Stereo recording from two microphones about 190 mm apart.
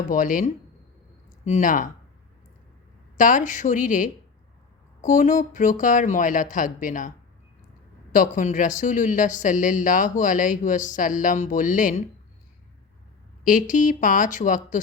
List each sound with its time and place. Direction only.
0.1 s speech: 45° left (ahead or behind)
3.2 s speech: 45° left (ahead or behind)
8.1 s speech: 45° left (ahead or behind)
13.4 s speech: 45° left (ahead or behind)